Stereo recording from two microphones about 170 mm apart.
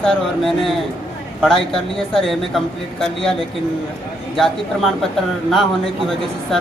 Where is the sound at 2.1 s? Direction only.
Centre (ahead or behind).